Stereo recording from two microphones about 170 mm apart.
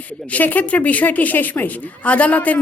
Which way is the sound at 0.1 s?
10° left (ahead or behind).